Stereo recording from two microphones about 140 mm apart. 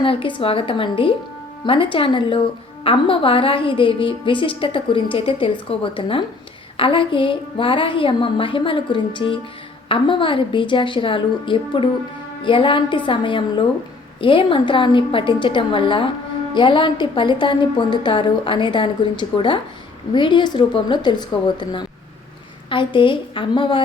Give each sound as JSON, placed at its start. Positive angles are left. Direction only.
{"t": 0.0, "sound": "a woman's voice", "side_deg": 40}
{"t": 20.1, "sound": "a woman's voice", "side_deg": 35}